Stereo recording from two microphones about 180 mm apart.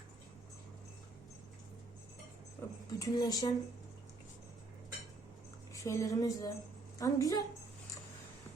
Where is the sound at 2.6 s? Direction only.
15° left (ahead or behind).